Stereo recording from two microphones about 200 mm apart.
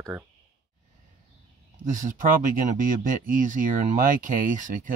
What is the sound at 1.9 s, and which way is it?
Speech, 40° right (ahead or behind).